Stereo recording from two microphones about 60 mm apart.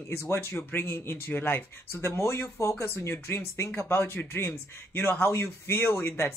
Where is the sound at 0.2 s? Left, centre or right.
Left.